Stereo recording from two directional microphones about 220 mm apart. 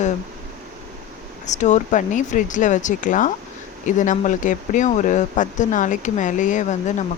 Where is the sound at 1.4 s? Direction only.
35° left (ahead or behind).